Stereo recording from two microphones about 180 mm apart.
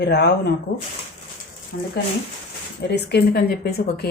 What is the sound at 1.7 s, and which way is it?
Speech, 75° left (ahead or behind).